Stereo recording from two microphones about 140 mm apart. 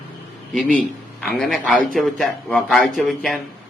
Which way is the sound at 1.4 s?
Centre (ahead or behind).